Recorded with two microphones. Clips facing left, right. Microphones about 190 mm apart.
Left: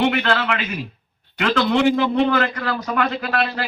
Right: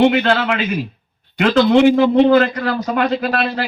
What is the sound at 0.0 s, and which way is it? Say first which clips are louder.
A man's voice: right 6 dB; 25° right (ahead or behind).